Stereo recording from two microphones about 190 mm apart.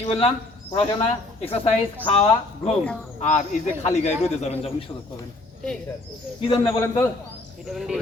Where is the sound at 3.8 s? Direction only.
35° left (ahead or behind).